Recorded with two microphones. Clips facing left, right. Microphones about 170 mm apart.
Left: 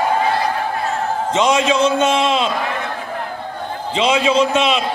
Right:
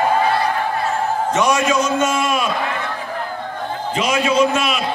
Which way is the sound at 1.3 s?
25° left (ahead or behind).